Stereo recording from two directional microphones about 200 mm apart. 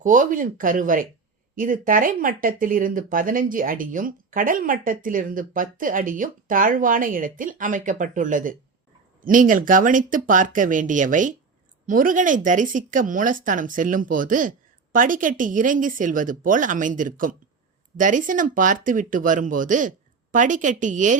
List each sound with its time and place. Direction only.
0.0 s speech: 40° right (ahead or behind)